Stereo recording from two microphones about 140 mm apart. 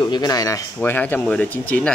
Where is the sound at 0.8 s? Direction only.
10° left (ahead or behind).